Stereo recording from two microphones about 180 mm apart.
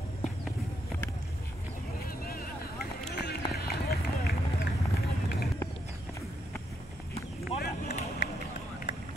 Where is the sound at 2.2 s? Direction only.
55° left (ahead or behind).